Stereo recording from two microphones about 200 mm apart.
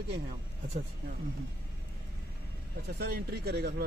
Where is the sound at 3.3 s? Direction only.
55° right (ahead or behind).